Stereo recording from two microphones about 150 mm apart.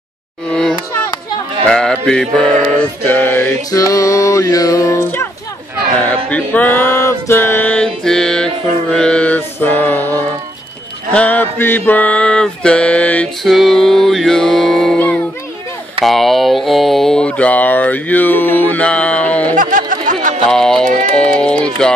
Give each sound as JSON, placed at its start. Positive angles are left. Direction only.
{"t": 0.5, "sound": "a sound", "side_deg": 5}
{"t": 1.7, "sound": "mantra", "side_deg": 5}
{"t": 6.0, "sound": "music", "side_deg": 10}
{"t": 8.9, "sound": "mantra", "side_deg": 5}
{"t": 11.1, "sound": "music", "side_deg": 10}
{"t": 16.0, "sound": "mantra", "side_deg": 0}
{"t": 19.5, "sound": "a sound", "side_deg": -60}
{"t": 20.4, "sound": "a sound", "side_deg": 5}
{"t": 21.2, "sound": "music", "side_deg": 5}